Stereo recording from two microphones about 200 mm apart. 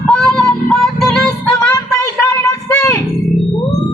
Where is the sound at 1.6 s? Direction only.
15° left (ahead or behind).